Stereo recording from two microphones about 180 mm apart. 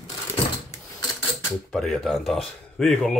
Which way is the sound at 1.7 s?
Centre (ahead or behind).